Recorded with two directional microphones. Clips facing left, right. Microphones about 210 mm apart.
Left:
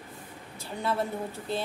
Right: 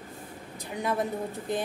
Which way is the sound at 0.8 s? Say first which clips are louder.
Right 1 dB; 15° right (ahead or behind).